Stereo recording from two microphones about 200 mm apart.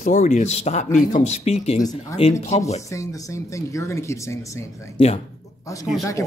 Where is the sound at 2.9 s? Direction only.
15° left (ahead or behind).